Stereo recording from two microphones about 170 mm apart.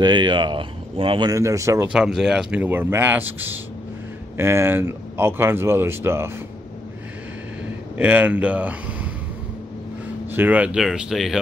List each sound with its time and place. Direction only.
0.0 s speech: 25° right (ahead or behind)
1.9 s speech: 5° right (ahead or behind)
8.0 s speech: 10° right (ahead or behind)
10.3 s speech: 10° right (ahead or behind)